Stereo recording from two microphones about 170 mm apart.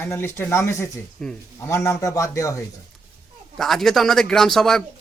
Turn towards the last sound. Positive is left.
turn(degrees=0)  # may be behind; listen again after turning